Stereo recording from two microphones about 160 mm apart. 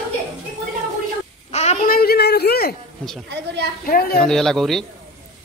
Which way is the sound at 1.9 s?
70° left (ahead or behind).